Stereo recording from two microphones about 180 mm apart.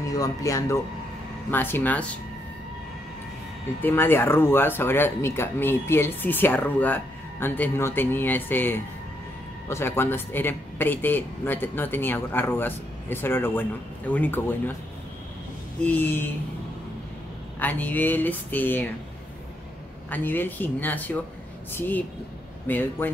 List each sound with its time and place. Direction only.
0.1 s speech: 20° left (ahead or behind)
3.8 s speech: 10° left (ahead or behind)
15.8 s speech: 10° left (ahead or behind)
17.6 s speech: 10° left (ahead or behind)
20.1 s speech: 10° left (ahead or behind)